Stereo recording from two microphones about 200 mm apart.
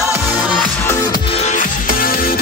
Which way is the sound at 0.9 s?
20° left (ahead or behind).